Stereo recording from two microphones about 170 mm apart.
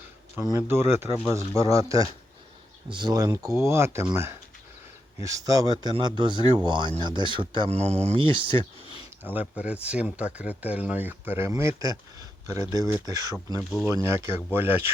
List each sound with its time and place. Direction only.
0.3 s speech: 15° right (ahead or behind)
9.2 s speech: 10° right (ahead or behind)